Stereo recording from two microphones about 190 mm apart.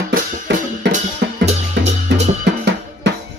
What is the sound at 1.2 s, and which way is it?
Music, 65° right (ahead or behind).